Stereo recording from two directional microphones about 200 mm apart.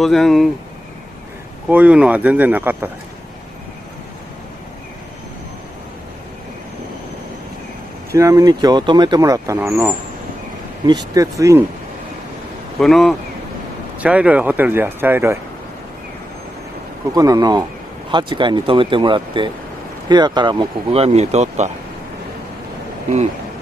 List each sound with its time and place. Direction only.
0.0 s speech: centre (ahead or behind)
1.7 s speech: 5° right (ahead or behind)
8.1 s speech: 15° right (ahead or behind)
12.7 s speech: centre (ahead or behind)
17.1 s speech: 20° right (ahead or behind)